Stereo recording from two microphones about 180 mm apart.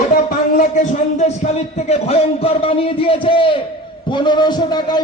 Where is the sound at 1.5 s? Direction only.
35° left (ahead or behind).